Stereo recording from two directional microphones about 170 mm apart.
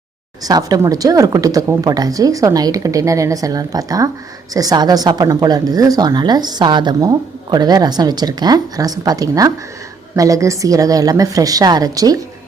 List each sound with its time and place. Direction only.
0.4 s a woman's voice: 20° right (ahead or behind)